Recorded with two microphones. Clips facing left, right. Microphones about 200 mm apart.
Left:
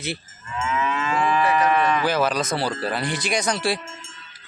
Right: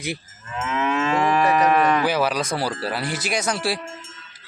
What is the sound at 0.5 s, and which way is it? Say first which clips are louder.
Moo: right 2 dB; 50° right (ahead or behind).